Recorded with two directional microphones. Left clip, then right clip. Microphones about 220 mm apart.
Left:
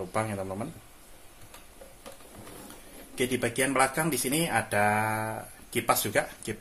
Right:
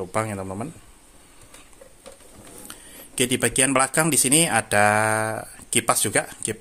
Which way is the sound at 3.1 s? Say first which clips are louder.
Right 6 dB; 40° right (ahead or behind).